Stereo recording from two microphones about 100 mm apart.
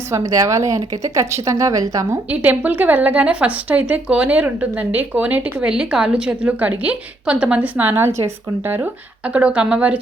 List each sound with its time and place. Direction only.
0.1 s speech: 35° right (ahead or behind)
2.3 s a woman's voice: 15° right (ahead or behind)